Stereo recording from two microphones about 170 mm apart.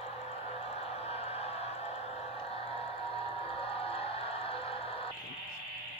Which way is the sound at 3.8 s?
35° left (ahead or behind).